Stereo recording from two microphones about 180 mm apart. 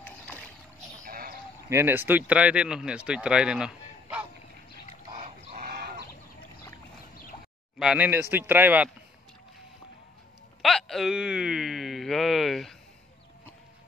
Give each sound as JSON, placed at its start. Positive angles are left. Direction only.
{"t": 1.0, "sound": "sheep", "side_deg": -55}
{"t": 1.7, "sound": "speech", "side_deg": -15}
{"t": 5.1, "sound": "livestock", "side_deg": -55}
{"t": 7.8, "sound": "speech", "side_deg": -5}
{"t": 10.6, "sound": "speech", "side_deg": 0}